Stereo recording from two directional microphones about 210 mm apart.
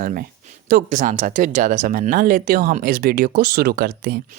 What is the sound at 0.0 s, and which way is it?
Speech, 40° right (ahead or behind).